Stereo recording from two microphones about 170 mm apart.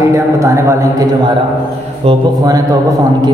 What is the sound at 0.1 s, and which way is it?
Speech, 15° right (ahead or behind).